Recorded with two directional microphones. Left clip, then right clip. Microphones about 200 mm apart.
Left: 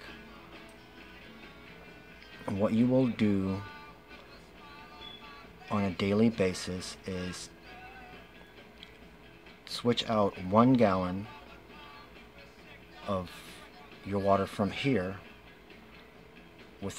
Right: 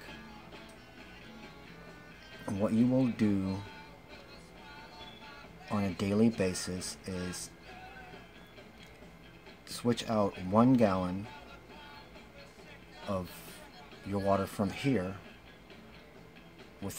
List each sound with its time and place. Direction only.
2.4 s speech: 10° left (ahead or behind)
5.7 s speech: 5° left (ahead or behind)
9.7 s speech: 5° left (ahead or behind)
13.0 s speech: 5° left (ahead or behind)